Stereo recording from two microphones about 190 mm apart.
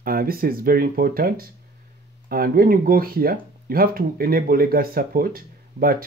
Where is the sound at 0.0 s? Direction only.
50° right (ahead or behind).